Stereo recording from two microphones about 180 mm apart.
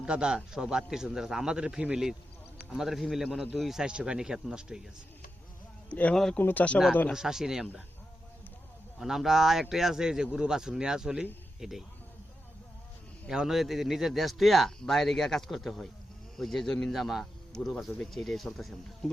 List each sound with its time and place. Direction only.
0.0 s a man's voice: 5° right (ahead or behind)
5.9 s a man's voice: 10° left (ahead or behind)
9.0 s a man's voice: centre (ahead or behind)
13.2 s a man's voice: 5° right (ahead or behind)